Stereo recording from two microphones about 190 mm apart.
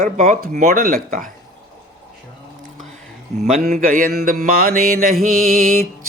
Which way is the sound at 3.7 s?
50° right (ahead or behind).